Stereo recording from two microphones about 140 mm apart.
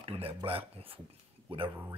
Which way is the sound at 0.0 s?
40° right (ahead or behind).